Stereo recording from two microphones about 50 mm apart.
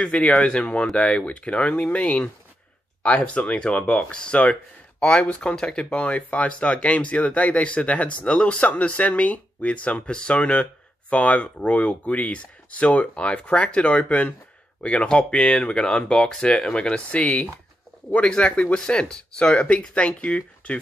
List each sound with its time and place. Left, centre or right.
0.0 s speech: left